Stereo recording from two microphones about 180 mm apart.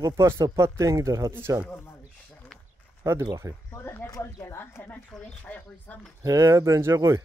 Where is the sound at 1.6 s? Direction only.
10° left (ahead or behind).